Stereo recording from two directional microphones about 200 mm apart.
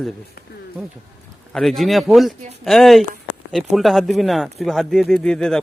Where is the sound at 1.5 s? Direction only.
Centre (ahead or behind).